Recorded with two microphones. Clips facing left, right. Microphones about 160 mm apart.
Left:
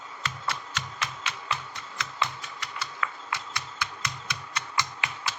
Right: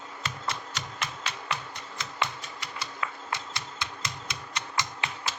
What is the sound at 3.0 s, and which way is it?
Typewriter, 25° right (ahead or behind).